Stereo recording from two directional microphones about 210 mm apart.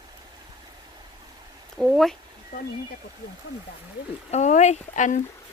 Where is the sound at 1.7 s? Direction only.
Centre (ahead or behind).